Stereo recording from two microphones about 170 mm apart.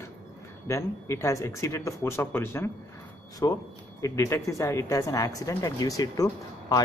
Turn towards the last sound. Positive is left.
turn(degrees=20)  # may be behind; listen again after turning